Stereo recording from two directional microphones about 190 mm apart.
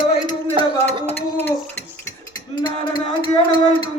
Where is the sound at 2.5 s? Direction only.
25° left (ahead or behind).